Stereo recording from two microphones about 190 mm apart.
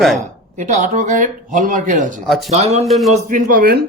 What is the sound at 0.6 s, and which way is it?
Speech, 40° right (ahead or behind).